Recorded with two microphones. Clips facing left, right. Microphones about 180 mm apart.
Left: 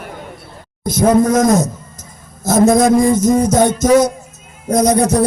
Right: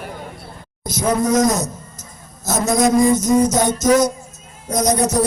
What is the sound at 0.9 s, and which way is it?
A man's voice, 55° left (ahead or behind).